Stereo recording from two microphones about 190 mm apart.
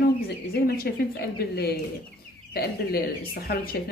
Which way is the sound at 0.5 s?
55° left (ahead or behind).